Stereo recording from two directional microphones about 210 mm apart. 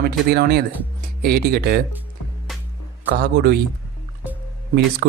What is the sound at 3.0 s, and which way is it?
Speech, 50° right (ahead or behind).